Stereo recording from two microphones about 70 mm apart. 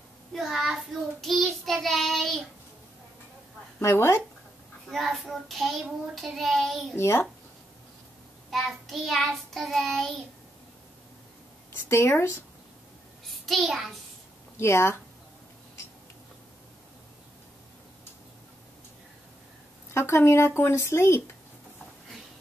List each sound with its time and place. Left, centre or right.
0.3 s child singing: centre
3.8 s speech: left
4.8 s child singing: centre
7.0 s speech: left
8.5 s child singing: centre
11.9 s speech: left
13.5 s child singing: centre
14.6 s speech: left
19.9 s speech: left